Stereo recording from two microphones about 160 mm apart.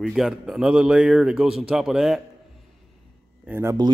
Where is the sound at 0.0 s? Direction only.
5° right (ahead or behind).